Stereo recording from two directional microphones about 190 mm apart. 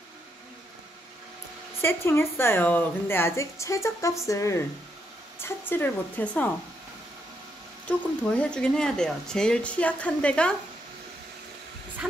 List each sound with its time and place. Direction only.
1.8 s a woman's voice: 15° left (ahead or behind)
7.8 s speech: 5° left (ahead or behind)